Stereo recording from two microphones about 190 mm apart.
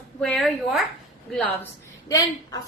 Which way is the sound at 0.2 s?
5° left (ahead or behind).